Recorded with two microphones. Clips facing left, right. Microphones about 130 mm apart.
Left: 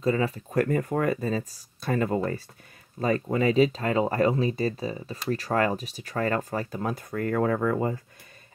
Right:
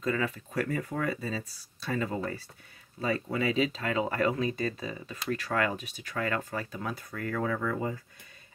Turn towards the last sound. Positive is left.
turn(degrees=45)  # may be behind; listen again after turning